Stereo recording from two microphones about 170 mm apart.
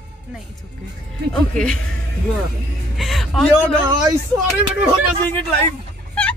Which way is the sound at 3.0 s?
Centre (ahead or behind).